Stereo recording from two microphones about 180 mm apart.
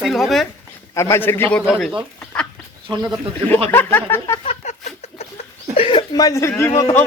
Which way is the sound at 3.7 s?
10° left (ahead or behind).